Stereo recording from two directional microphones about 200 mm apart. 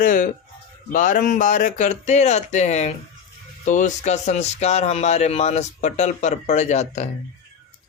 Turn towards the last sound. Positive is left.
turn(degrees=35)  # may be behind; listen again after turning